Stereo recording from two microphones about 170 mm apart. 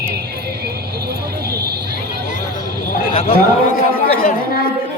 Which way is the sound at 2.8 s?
55° left (ahead or behind).